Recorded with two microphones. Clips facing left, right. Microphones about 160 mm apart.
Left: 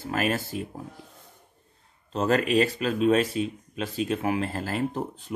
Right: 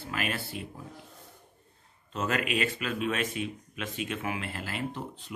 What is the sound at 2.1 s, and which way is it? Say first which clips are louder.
Speech: left 7 dB; 35° left (ahead or behind).